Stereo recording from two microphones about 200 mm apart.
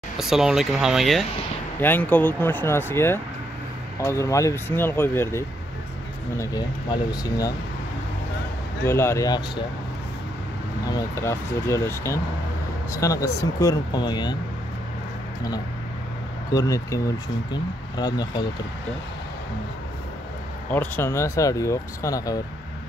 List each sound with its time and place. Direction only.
0.2 s speech: centre (ahead or behind); by 7.5 s 20° left (ahead or behind)
8.8 s speech: 15° left (ahead or behind)
10.9 s speech: 15° left (ahead or behind)
16.5 s speech: 15° left (ahead or behind)
20.7 s speech: 10° left (ahead or behind)